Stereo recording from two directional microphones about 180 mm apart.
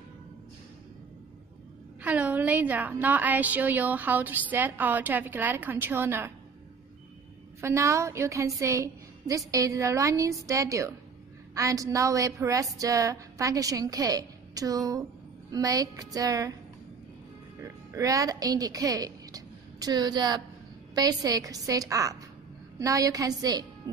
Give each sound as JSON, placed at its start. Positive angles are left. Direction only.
{"t": 2.0, "sound": "a woman's voice", "side_deg": -10}
{"t": 7.6, "sound": "a woman's voice", "side_deg": -15}
{"t": 17.6, "sound": "a woman's voice", "side_deg": -20}